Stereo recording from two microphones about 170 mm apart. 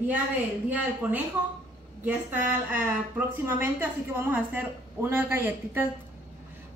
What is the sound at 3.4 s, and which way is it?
A woman's voice, 15° right (ahead or behind).